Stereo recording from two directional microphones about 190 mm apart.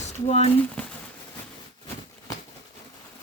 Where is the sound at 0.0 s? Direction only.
35° left (ahead or behind).